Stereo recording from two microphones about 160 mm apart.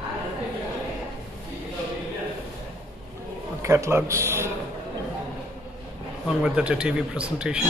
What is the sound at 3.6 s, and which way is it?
Speech, 15° right (ahead or behind).